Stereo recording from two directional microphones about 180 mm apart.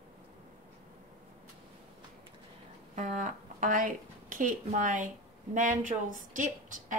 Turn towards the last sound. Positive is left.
turn(degrees=-45)  # may be behind; listen again after turning